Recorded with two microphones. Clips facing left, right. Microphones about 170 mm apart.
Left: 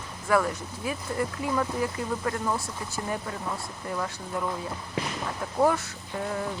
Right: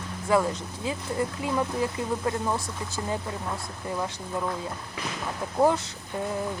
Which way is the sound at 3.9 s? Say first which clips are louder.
Right 1 dB; 20° right (ahead or behind).